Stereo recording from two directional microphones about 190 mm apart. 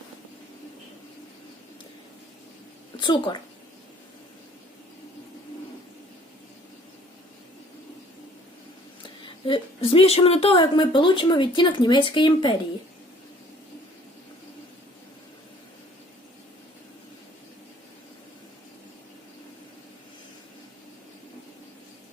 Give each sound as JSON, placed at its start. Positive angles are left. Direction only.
{"t": 3.0, "sound": "a woman's voice", "side_deg": 25}
{"t": 9.0, "sound": "a woman's voice", "side_deg": 25}